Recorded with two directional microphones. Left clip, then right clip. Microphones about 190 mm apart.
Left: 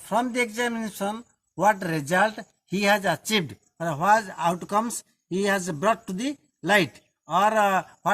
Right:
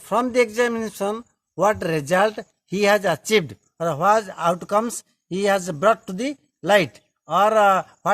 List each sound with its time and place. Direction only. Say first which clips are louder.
0.0 s a man's voice: right 5 dB; 50° right (ahead or behind)